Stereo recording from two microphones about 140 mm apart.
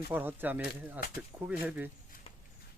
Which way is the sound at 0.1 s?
15° right (ahead or behind).